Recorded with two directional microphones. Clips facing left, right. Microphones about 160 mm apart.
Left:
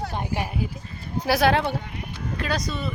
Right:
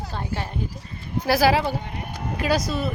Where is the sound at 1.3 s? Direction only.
Centre (ahead or behind).